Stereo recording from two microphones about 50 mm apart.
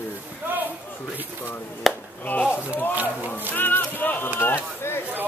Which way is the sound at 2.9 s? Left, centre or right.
Right.